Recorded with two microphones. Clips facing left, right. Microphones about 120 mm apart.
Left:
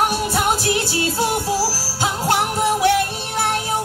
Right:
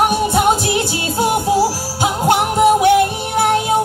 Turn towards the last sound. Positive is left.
turn(degrees=-20)  # may be behind; listen again after turning